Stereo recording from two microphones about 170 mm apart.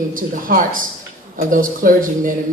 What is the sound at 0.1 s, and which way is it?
Speech, 55° right (ahead or behind).